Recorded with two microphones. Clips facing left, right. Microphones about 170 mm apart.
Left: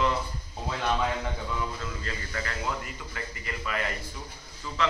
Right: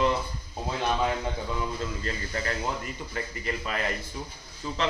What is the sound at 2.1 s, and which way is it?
A man's voice, 30° right (ahead or behind).